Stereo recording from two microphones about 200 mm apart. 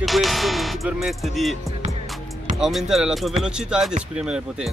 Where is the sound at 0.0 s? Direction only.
Centre (ahead or behind).